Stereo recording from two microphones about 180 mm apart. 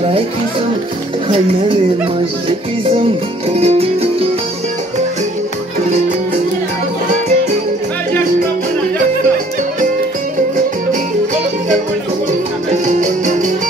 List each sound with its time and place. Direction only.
3.5 s music: 35° right (ahead or behind)
12.8 s music: 45° right (ahead or behind)